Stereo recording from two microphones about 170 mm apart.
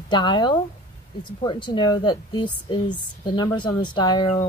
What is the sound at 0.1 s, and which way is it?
A woman's voice, 25° left (ahead or behind).